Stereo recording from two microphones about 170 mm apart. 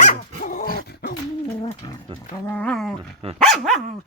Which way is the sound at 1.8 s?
25° left (ahead or behind).